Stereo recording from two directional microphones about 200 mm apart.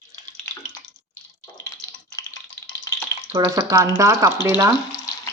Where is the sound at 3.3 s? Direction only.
15° right (ahead or behind).